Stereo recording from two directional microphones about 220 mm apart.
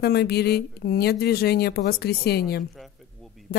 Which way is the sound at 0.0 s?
45° left (ahead or behind).